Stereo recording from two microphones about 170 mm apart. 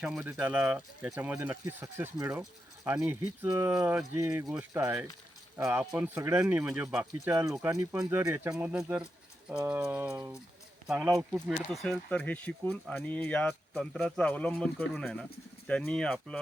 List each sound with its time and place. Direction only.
0.0 s speech: 5° right (ahead or behind)
7.0 s speech: 15° right (ahead or behind)
8.5 s speech: 5° right (ahead or behind)